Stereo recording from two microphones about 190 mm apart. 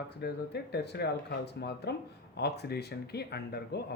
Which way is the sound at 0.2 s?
60° left (ahead or behind).